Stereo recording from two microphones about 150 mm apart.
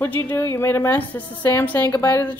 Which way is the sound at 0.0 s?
10° left (ahead or behind).